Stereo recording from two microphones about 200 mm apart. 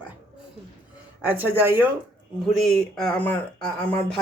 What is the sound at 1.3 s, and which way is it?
Speech, 10° right (ahead or behind).